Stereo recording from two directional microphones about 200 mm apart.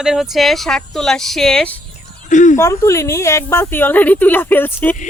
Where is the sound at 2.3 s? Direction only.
40° left (ahead or behind).